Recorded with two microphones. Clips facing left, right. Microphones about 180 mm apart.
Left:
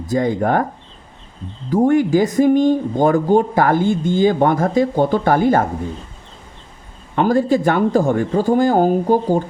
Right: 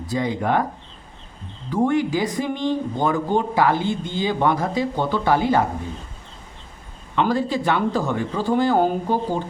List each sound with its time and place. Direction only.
0.1 s speech: 45° left (ahead or behind)
1.7 s speech: 45° left (ahead or behind)
7.2 s speech: 45° left (ahead or behind)